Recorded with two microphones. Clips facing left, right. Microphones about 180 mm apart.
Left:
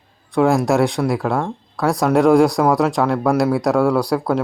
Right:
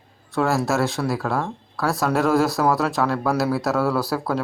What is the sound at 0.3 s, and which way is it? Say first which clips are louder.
Speech: left 6 dB; 15° left (ahead or behind).